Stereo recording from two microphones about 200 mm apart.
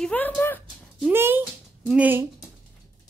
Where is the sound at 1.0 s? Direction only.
10° right (ahead or behind).